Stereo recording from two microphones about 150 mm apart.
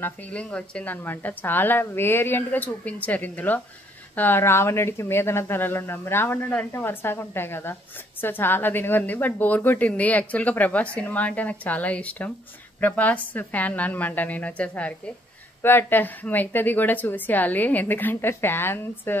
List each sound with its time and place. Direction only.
0.0 s a woman's voice: 10° left (ahead or behind)